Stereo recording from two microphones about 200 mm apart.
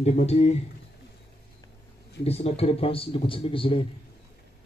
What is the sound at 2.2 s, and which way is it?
Speech, 30° left (ahead or behind).